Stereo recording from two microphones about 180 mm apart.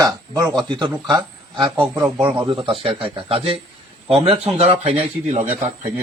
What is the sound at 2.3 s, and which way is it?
A man's voice, 25° right (ahead or behind).